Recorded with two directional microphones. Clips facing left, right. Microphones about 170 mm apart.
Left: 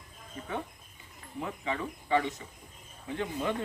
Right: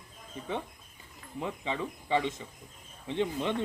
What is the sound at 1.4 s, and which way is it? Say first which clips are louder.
Speech: right 1 dB; 20° right (ahead or behind).